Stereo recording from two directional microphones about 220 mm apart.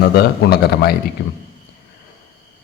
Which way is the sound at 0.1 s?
45° left (ahead or behind).